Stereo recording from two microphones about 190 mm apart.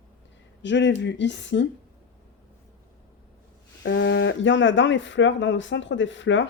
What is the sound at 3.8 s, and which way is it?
Speech, 70° left (ahead or behind).